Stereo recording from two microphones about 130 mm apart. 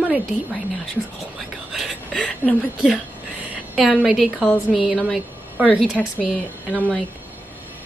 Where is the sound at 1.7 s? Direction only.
Centre (ahead or behind).